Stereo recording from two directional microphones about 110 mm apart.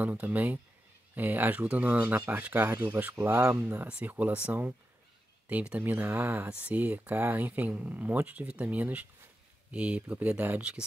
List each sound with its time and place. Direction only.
0.0 s speech: 15° right (ahead or behind)